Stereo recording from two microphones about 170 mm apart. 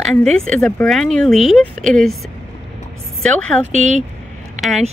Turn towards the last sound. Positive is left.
turn(degrees=0)  # may be behind; listen again after turning